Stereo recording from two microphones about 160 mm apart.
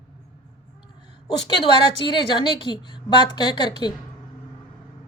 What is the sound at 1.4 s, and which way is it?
Speech, 30° left (ahead or behind).